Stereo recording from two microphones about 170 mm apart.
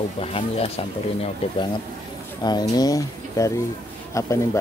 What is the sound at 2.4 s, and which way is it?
Speech, 25° left (ahead or behind).